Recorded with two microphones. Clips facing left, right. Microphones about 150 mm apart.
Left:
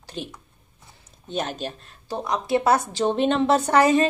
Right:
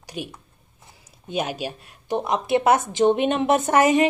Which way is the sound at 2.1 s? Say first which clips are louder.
Right 2 dB; 20° right (ahead or behind).